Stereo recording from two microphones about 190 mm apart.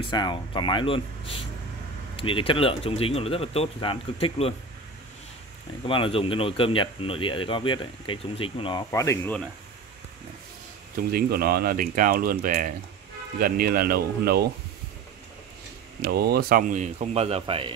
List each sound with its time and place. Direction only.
0.0 s speech: 25° left (ahead or behind)
5.9 s speech: 30° left (ahead or behind); by 9.4 s 15° left (ahead or behind)
11.1 s speech: 55° right (ahead or behind)
16.0 s speech: 55° right (ahead or behind); by 17.7 s 30° right (ahead or behind)